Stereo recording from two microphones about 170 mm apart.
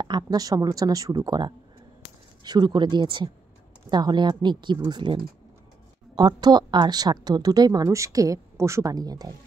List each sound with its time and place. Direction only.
0.0 s a woman's voice: 25° right (ahead or behind)